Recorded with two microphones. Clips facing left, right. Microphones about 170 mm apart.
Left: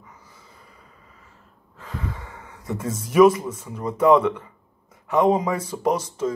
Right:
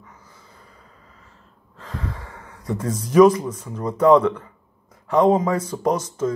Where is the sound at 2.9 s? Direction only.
5° left (ahead or behind).